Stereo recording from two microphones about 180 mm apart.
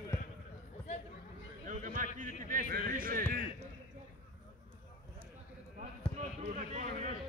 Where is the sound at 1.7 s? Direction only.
45° right (ahead or behind).